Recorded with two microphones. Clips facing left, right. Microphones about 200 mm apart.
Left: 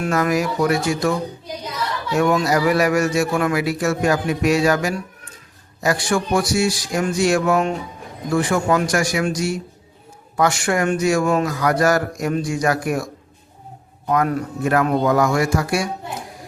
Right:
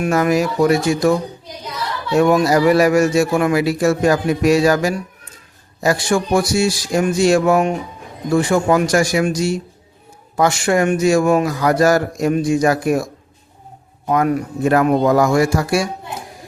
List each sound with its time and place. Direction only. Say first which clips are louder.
0.0 s a man's voice: right 3 dB; 25° right (ahead or behind)
2.1 s a man's voice: right 4 dB; 25° right (ahead or behind)
14.1 s a man's voice: right 3 dB; 20° right (ahead or behind)